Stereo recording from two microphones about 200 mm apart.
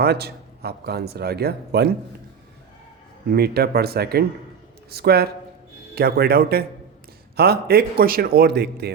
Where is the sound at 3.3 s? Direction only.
50° right (ahead or behind).